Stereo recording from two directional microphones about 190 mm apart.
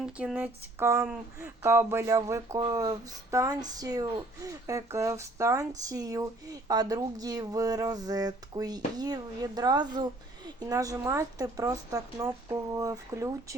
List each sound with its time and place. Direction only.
0.0 s speech: 5° right (ahead or behind)